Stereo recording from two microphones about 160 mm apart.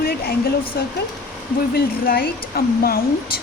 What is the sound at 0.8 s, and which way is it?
Speech, 75° left (ahead or behind).